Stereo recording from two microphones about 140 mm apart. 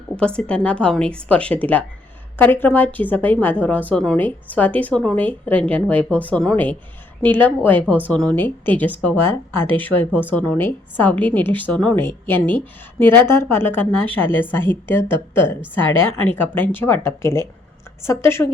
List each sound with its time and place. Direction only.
0.2 s a woman's voice: 5° left (ahead or behind)